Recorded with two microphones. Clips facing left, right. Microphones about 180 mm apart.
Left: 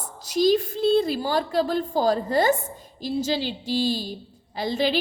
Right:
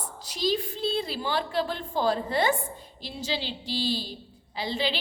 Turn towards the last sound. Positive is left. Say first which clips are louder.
# left 6 dB
turn(degrees=45)  # may be behind; listen again after turning